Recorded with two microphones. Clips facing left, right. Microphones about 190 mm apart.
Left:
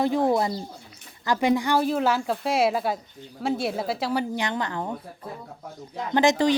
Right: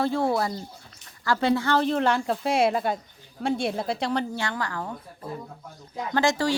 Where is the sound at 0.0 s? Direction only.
15° left (ahead or behind).